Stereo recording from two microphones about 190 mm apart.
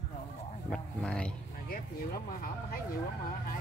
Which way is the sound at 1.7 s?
50° left (ahead or behind).